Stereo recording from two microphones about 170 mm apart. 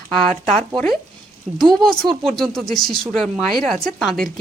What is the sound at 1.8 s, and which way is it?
A woman's voice, centre (ahead or behind).